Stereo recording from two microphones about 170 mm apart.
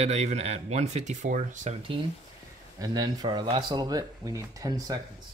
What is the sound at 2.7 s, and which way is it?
Speech, 25° right (ahead or behind).